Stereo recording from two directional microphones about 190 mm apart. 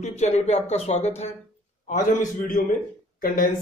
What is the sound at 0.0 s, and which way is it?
Speech, 35° left (ahead or behind).